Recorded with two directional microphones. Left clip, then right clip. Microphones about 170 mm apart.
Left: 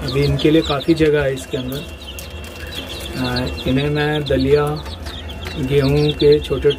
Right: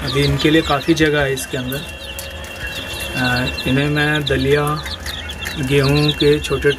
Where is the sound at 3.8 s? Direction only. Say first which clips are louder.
Right 1 dB; 15° right (ahead or behind).